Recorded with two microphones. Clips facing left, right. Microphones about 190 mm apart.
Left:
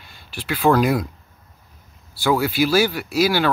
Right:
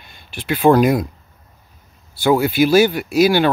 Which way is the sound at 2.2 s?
20° right (ahead or behind).